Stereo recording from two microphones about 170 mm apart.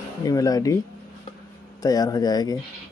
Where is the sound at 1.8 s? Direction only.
20° left (ahead or behind).